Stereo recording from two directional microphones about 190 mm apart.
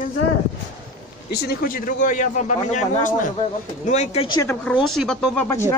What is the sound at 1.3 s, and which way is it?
Speech, 55° left (ahead or behind).